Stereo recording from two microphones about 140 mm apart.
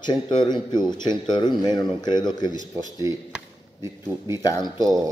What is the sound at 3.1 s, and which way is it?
Speech, 20° right (ahead or behind).